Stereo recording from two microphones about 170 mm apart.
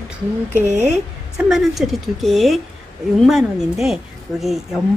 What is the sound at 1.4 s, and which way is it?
A woman's voice, centre (ahead or behind).